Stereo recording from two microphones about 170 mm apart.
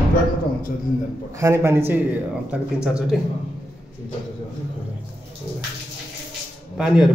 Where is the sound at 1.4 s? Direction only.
15° right (ahead or behind).